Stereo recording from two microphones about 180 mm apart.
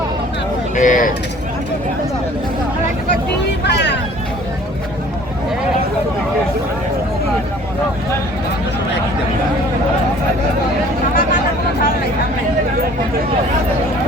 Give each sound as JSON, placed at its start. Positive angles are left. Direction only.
{"t": 0.8, "sound": "speech", "side_deg": 45}
{"t": 3.6, "sound": "vehicle", "side_deg": 70}